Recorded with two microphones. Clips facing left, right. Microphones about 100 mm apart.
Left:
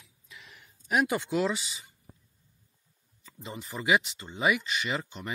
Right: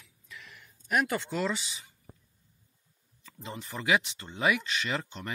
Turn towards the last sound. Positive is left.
turn(degrees=5)  # may be behind; listen again after turning